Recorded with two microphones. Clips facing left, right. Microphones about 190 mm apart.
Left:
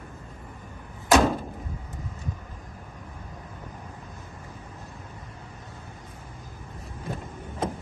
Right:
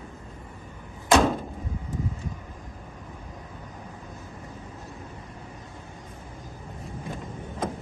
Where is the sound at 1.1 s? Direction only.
Centre (ahead or behind).